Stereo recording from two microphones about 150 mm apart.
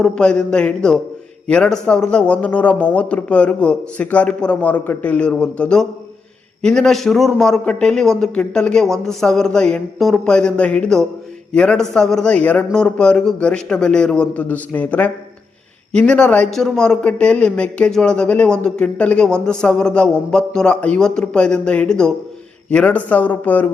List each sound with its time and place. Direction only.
0.0 s a man's voice: 5° left (ahead or behind)